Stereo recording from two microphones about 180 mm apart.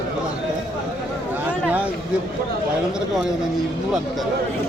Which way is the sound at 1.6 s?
10° right (ahead or behind).